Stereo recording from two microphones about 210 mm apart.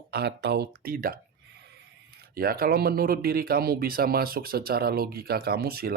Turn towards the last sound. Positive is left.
turn(degrees=-45)  # may be behind; listen again after turning